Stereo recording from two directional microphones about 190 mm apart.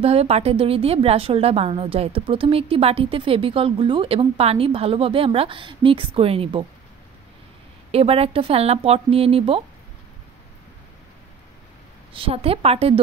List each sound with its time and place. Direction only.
0.0 s a woman's voice: 30° right (ahead or behind)
7.9 s speech: 30° right (ahead or behind)
12.1 s speech: 30° right (ahead or behind)